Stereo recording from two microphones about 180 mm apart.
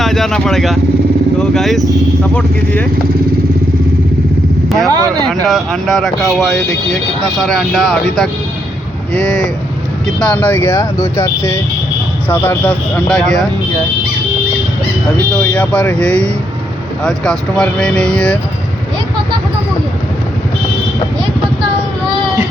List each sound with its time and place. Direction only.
0.0 s speech: centre (ahead or behind)
4.9 s speech: 20° right (ahead or behind)
5.5 s speech: centre (ahead or behind)
10.1 s speech: 5° left (ahead or behind)
15.4 s speech: 5° left (ahead or behind)